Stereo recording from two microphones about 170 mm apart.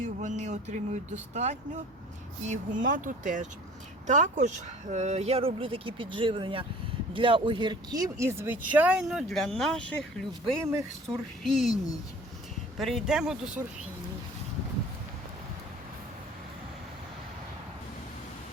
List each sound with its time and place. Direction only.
0.0 s speech: 45° right (ahead or behind); by 11.7 s centre (ahead or behind)
12.8 s speech: centre (ahead or behind)